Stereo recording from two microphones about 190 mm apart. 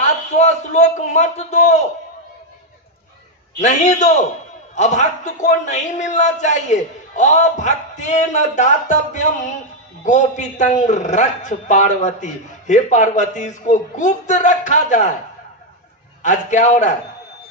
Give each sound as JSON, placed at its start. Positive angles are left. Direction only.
{"t": 0.0, "sound": "a man's voice", "side_deg": 35}
{"t": 3.6, "sound": "a man's voice", "side_deg": 40}
{"t": 16.2, "sound": "a man's voice", "side_deg": 40}